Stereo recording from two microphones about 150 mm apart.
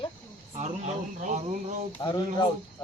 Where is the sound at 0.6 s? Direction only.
50° right (ahead or behind).